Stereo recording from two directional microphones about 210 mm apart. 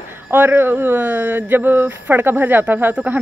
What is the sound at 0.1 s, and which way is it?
Speech, 10° right (ahead or behind).